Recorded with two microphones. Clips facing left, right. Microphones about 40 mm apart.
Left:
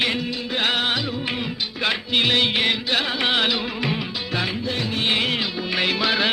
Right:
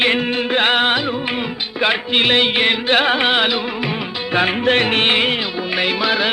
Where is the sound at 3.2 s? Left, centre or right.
Right.